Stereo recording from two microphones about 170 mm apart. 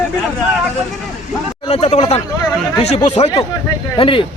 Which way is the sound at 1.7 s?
35° left (ahead or behind).